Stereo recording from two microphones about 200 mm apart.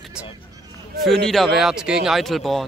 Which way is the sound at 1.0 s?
Centre (ahead or behind).